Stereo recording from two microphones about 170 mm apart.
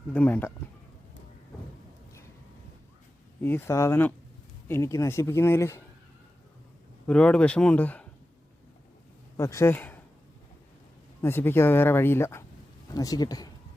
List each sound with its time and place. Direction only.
0.1 s speech: 10° left (ahead or behind)
3.4 s speech: 15° left (ahead or behind)
7.1 s speech: 5° left (ahead or behind)
9.4 s speech: 15° left (ahead or behind)
11.2 s speech: 15° left (ahead or behind)